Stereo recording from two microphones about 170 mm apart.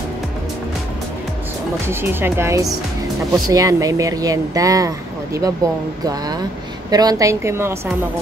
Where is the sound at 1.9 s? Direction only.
15° right (ahead or behind).